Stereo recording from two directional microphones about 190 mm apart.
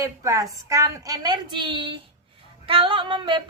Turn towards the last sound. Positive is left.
turn(degrees=-25)  # may be behind; listen again after turning